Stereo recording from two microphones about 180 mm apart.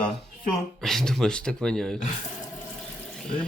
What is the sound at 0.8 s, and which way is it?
Speech, centre (ahead or behind).